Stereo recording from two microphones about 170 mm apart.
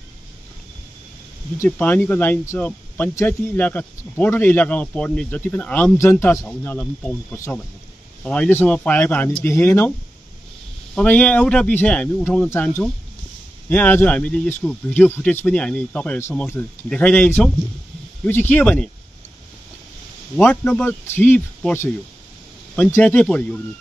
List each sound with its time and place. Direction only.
1.6 s speech: 10° left (ahead or behind)
8.2 s speech: 5° left (ahead or behind)
11.0 s speech: 5° left (ahead or behind)
20.3 s speech: 5° left (ahead or behind)
22.9 s speech: 5° left (ahead or behind)